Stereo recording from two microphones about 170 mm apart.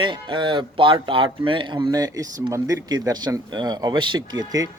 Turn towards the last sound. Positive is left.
turn(degrees=-20)  # may be behind; listen again after turning